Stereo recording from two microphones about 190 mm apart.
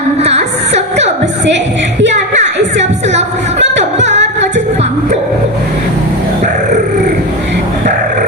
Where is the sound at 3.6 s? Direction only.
70° right (ahead or behind).